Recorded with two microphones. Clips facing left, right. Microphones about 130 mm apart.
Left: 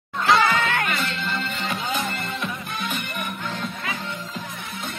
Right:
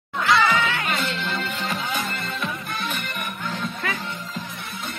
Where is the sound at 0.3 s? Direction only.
45° left (ahead or behind).